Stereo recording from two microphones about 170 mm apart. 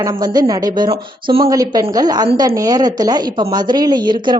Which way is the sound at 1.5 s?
20° right (ahead or behind).